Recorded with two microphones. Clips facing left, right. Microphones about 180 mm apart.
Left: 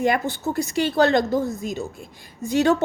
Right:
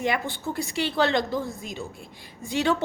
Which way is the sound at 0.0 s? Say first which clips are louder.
Left 5 dB; 45° left (ahead or behind).